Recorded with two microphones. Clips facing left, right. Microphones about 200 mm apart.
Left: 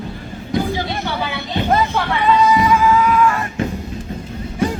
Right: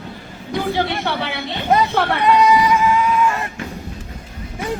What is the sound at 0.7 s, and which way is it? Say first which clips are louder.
Speech: right 2 dB; 65° right (ahead or behind).